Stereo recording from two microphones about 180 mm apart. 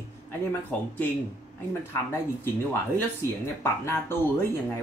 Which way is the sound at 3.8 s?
15° left (ahead or behind).